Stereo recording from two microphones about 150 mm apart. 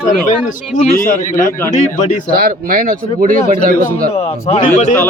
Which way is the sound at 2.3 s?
75° right (ahead or behind).